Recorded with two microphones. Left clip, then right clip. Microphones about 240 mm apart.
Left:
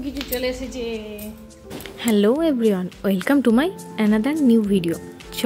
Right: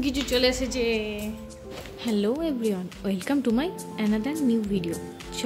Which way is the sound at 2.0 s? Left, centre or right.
Left.